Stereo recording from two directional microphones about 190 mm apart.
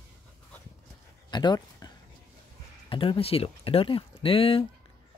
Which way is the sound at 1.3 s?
20° left (ahead or behind).